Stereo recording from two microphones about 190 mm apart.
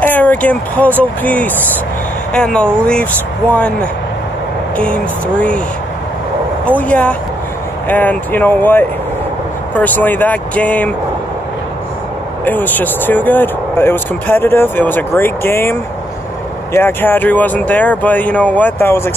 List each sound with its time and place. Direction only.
0.0 s speech: 10° left (ahead or behind)
6.8 s speech: 5° left (ahead or behind)
12.4 s speech: 10° left (ahead or behind)